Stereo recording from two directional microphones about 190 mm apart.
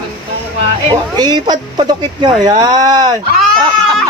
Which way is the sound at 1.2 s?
20° right (ahead or behind).